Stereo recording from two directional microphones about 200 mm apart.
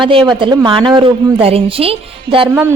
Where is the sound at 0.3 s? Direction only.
25° right (ahead or behind).